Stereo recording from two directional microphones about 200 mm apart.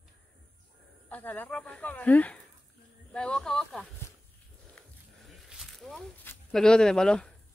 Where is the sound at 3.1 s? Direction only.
5° left (ahead or behind).